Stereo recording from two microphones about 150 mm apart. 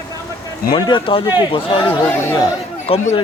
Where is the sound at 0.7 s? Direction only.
35° left (ahead or behind).